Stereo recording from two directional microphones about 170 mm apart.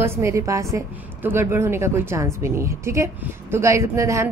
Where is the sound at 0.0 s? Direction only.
15° right (ahead or behind).